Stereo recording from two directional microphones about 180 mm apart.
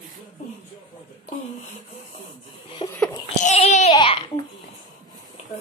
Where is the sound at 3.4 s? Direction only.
40° left (ahead or behind).